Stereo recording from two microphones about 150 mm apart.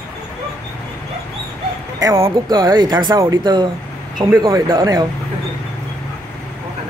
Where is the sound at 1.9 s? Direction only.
25° right (ahead or behind).